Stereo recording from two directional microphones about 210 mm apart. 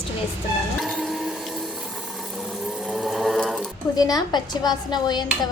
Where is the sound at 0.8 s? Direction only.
Centre (ahead or behind).